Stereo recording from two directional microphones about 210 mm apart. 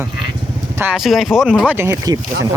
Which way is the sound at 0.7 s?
5° right (ahead or behind).